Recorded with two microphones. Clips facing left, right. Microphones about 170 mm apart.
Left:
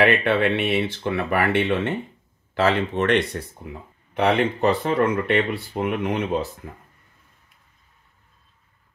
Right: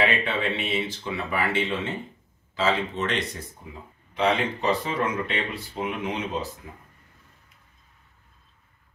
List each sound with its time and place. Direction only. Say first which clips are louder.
0.0 s speech: left 6 dB; 65° left (ahead or behind)